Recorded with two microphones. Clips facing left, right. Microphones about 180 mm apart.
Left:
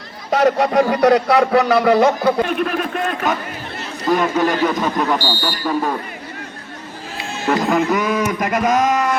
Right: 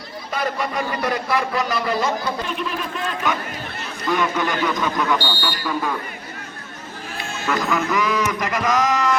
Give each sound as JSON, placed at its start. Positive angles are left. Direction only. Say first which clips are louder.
{"t": 0.3, "sound": "a man's voice", "louder": "left 10 dB", "side_deg": 75}
{"t": 4.0, "sound": "a man's voice", "louder": "left 5 dB", "side_deg": 40}
{"t": 7.9, "sound": "a sound", "louder": "left 3 dB", "side_deg": 50}